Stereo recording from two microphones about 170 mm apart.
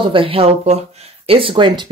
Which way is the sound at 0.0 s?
30° right (ahead or behind).